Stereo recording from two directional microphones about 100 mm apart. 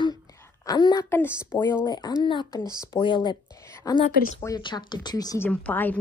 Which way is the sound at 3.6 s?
30° left (ahead or behind).